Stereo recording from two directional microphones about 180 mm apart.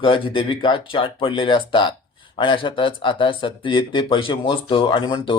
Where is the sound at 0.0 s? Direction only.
30° left (ahead or behind).